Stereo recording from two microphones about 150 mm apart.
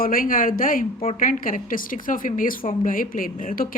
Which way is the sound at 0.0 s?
70° left (ahead or behind).